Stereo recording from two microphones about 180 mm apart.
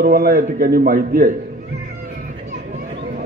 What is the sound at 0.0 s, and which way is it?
A man's voice, 55° right (ahead or behind).